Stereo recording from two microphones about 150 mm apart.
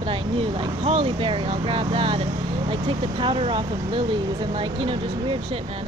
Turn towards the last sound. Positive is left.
turn(degrees=-35)  # may be behind; listen again after turning